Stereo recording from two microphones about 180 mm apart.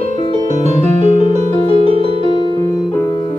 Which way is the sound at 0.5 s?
40° right (ahead or behind).